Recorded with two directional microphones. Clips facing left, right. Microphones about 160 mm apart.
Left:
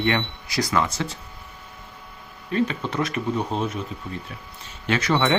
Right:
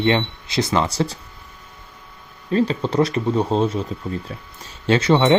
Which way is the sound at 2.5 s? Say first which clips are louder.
Right 5 dB; 35° right (ahead or behind).